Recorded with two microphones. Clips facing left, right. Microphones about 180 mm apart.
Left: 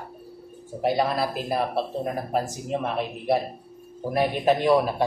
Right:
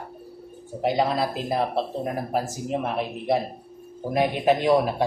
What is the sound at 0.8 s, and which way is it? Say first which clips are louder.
Speech: right 1 dB; 20° right (ahead or behind).